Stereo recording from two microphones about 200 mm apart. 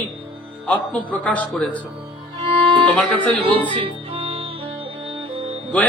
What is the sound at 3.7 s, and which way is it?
Music, 25° right (ahead or behind).